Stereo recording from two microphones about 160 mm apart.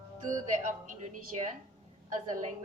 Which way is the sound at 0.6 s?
50° right (ahead or behind).